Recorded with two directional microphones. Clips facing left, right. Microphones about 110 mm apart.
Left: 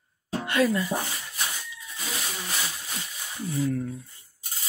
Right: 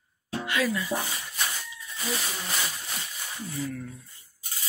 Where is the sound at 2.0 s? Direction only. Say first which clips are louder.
Right 2 dB; centre (ahead or behind).